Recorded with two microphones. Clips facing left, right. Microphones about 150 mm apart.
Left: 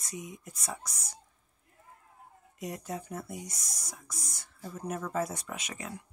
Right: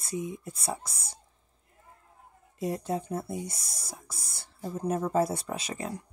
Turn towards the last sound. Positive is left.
turn(degrees=-35)  # may be behind; listen again after turning